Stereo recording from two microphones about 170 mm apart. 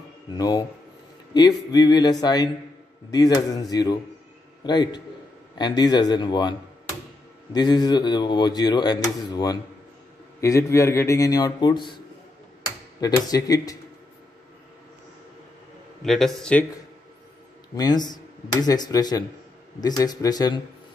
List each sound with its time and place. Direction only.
0.4 s speech: 20° left (ahead or behind)
7.5 s speech: 25° left (ahead or behind)
13.0 s speech: 20° left (ahead or behind)
16.0 s a man's voice: centre (ahead or behind)
17.7 s speech: 25° left (ahead or behind)